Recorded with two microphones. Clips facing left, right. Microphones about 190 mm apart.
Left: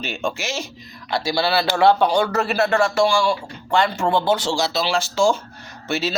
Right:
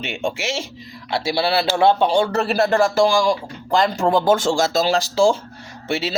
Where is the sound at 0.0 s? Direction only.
25° right (ahead or behind).